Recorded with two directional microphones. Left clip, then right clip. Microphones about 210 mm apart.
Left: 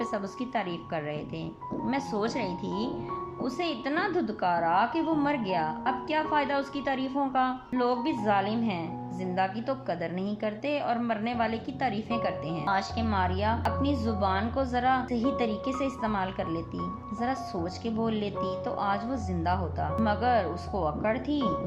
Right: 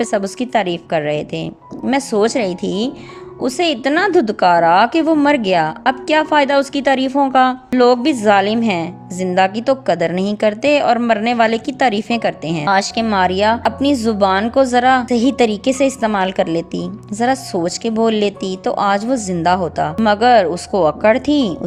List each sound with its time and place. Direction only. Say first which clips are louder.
0.0 s a woman's voice: right 14 dB; 45° right (ahead or behind)